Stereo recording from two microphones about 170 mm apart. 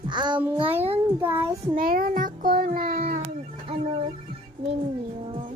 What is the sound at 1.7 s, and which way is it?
A child's voice, 60° right (ahead or behind).